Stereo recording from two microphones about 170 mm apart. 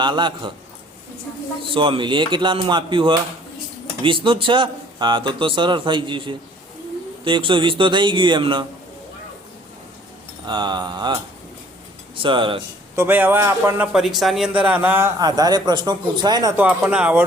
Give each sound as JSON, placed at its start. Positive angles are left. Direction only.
{"t": 0.0, "sound": "speech", "side_deg": -25}
{"t": 1.7, "sound": "speech", "side_deg": -30}
{"t": 10.4, "sound": "speech", "side_deg": -25}
{"t": 13.0, "sound": "a man's voice", "side_deg": -10}
{"t": 13.9, "sound": "a man's voice", "side_deg": 0}